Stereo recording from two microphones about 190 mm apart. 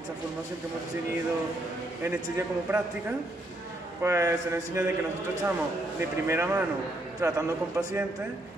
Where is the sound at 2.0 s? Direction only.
10° right (ahead or behind).